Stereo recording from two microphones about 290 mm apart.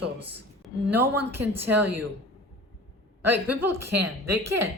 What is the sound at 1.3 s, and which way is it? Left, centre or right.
Speech, centre.